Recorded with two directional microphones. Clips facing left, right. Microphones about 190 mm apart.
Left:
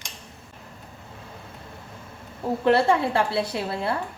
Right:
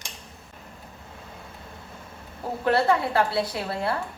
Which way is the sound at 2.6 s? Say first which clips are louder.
Left 2 dB; 25° left (ahead or behind).